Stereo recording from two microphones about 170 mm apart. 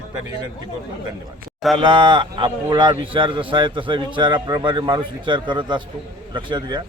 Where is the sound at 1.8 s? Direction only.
30° right (ahead or behind).